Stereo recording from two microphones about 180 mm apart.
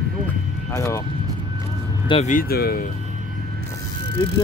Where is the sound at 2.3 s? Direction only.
60° left (ahead or behind).